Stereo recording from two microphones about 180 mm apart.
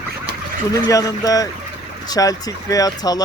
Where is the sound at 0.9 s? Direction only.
20° left (ahead or behind).